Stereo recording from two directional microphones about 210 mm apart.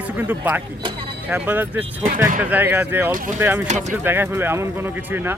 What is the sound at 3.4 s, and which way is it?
Speech, 10° right (ahead or behind).